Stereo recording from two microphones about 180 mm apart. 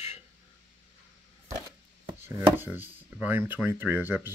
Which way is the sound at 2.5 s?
10° right (ahead or behind).